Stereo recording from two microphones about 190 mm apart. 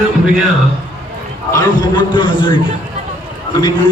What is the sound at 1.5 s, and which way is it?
A man's voice, 25° left (ahead or behind).